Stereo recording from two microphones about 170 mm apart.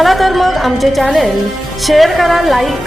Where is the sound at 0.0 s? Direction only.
Centre (ahead or behind).